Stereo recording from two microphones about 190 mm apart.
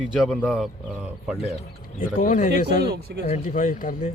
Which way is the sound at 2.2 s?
40° left (ahead or behind).